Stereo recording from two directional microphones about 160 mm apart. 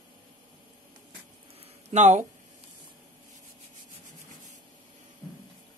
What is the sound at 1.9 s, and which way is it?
Speech, 45° right (ahead or behind).